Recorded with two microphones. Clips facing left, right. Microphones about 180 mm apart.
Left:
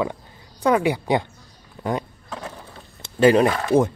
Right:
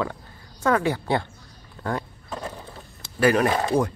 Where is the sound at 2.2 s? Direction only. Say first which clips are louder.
Right 1 dB; 10° right (ahead or behind).